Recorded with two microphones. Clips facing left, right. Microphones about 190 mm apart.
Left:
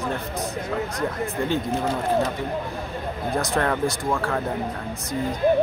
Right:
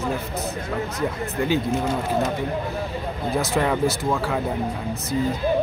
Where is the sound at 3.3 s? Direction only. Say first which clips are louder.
Right 2 dB; 5° right (ahead or behind).